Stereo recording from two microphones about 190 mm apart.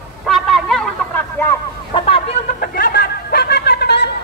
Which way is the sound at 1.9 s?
30° left (ahead or behind).